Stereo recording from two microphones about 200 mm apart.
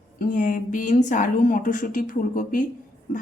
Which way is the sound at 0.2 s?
45° left (ahead or behind).